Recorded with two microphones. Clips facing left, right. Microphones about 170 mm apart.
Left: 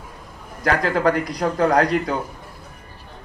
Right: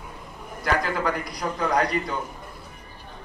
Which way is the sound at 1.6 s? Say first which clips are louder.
Left 6 dB; 45° left (ahead or behind).